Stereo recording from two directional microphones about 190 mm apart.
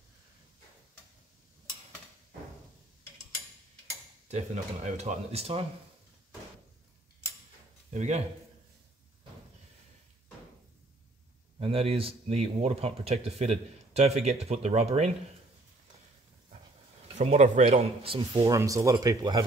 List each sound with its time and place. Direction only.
4.3 s speech: 35° right (ahead or behind)
7.9 s a man's voice: 35° right (ahead or behind)
11.6 s speech: 30° right (ahead or behind)
17.1 s speech: 35° right (ahead or behind); by 19.4 s 20° right (ahead or behind)